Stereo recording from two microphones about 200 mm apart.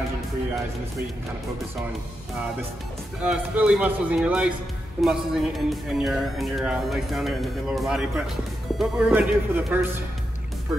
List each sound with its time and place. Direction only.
3.2 s speech: 5° right (ahead or behind)